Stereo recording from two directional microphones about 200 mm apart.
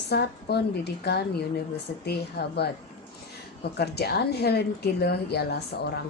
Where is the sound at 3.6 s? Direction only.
55° left (ahead or behind).